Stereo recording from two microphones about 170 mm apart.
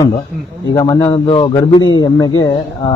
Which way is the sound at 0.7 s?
20° left (ahead or behind).